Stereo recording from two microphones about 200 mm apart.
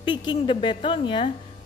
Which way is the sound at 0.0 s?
25° left (ahead or behind).